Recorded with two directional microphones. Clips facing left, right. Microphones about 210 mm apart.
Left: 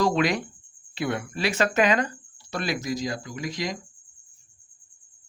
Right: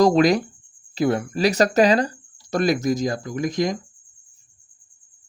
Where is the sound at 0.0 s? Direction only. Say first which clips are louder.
Right 7 dB; 40° right (ahead or behind).